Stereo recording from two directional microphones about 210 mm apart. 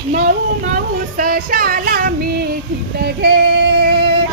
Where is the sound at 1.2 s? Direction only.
45° right (ahead or behind).